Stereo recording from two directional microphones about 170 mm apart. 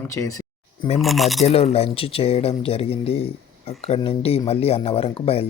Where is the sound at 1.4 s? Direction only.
35° left (ahead or behind).